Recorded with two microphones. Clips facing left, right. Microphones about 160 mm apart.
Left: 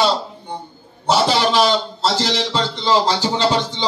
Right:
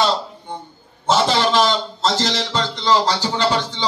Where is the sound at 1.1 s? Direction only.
5° left (ahead or behind).